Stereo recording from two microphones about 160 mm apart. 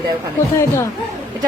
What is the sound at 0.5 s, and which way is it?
Speech, 15° left (ahead or behind).